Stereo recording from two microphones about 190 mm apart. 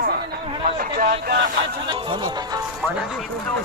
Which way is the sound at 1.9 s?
25° right (ahead or behind).